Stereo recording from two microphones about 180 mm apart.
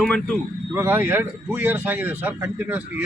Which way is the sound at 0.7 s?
10° right (ahead or behind).